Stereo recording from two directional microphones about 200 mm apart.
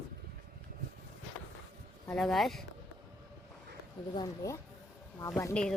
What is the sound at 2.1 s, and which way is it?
Speech, centre (ahead or behind).